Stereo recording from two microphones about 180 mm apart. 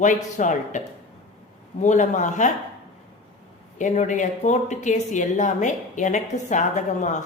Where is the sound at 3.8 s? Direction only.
45° left (ahead or behind).